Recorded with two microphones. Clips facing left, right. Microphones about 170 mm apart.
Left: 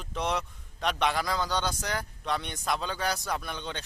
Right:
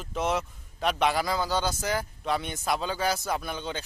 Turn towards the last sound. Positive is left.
turn(degrees=-5)  # may be behind; listen again after turning